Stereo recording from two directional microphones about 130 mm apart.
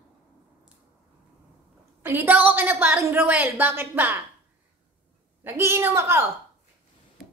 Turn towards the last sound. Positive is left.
turn(degrees=-20)  # may be behind; listen again after turning